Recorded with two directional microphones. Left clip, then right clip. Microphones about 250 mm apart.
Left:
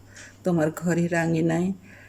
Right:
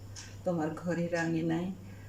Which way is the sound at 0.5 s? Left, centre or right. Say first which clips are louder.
Left 9 dB; left.